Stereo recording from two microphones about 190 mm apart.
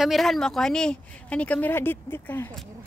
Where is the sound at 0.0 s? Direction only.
Centre (ahead or behind).